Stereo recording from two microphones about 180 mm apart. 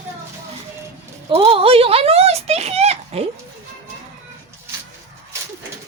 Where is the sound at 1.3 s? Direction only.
30° right (ahead or behind).